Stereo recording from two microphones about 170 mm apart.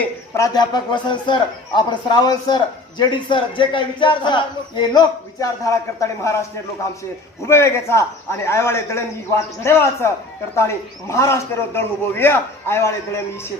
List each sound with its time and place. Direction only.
0.0 s speech: 20° left (ahead or behind)
7.4 s a man's voice: 15° left (ahead or behind)